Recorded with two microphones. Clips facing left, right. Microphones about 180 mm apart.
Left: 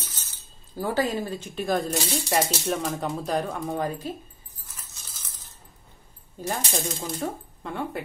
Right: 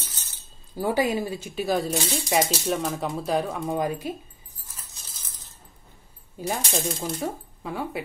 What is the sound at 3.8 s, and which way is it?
Speech, 10° right (ahead or behind).